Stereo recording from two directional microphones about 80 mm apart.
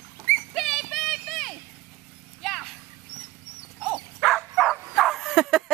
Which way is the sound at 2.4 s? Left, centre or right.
Centre.